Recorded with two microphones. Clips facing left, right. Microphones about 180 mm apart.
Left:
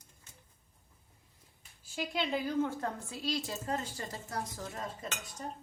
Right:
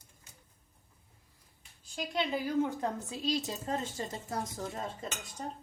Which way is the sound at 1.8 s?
5° left (ahead or behind).